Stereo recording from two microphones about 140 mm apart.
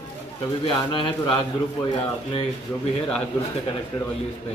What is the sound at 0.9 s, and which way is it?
Speech, 35° left (ahead or behind).